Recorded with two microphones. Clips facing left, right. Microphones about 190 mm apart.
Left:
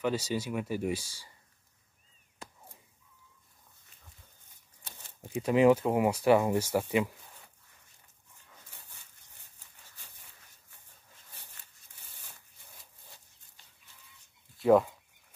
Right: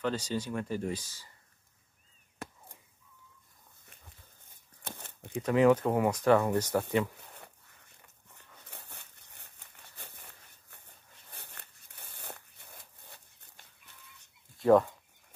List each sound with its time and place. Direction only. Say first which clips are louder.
0.0 s speech: left 2 dB; 10° left (ahead or behind)
4.8 s crumpling: right 8 dB; 55° right (ahead or behind)
5.4 s speech: left 1 dB; 15° left (ahead or behind)
8.0 s dog: right 4 dB; 65° right (ahead or behind)
11.3 s a sound: right 8 dB; 60° right (ahead or behind)
14.6 s speech: even; 5° left (ahead or behind)